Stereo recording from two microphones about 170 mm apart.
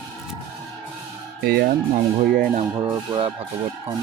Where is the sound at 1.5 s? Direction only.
65° right (ahead or behind).